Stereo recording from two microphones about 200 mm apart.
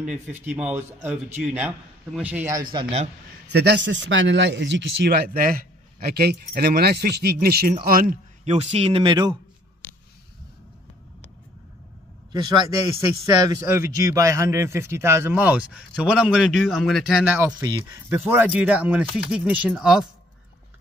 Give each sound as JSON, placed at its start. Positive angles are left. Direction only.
{"t": 0.5, "sound": "a man's voice", "side_deg": -5}
{"t": 2.7, "sound": "speech", "side_deg": -25}
{"t": 3.5, "sound": "a man's voice", "side_deg": -60}
{"t": 8.5, "sound": "speech", "side_deg": -30}
{"t": 12.3, "sound": "a man's voice", "side_deg": -20}
{"t": 17.6, "sound": "speech", "side_deg": -20}
{"t": 18.1, "sound": "speech", "side_deg": -10}